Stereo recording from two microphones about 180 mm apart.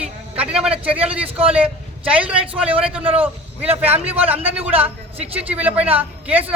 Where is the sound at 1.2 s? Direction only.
30° right (ahead or behind).